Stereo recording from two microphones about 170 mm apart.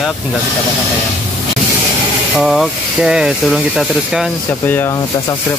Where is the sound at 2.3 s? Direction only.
Centre (ahead or behind).